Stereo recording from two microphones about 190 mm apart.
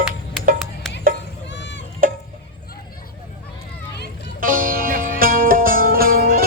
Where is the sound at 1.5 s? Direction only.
70° left (ahead or behind).